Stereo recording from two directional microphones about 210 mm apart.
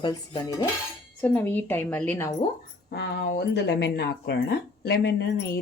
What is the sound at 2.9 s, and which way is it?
Speech, 55° left (ahead or behind).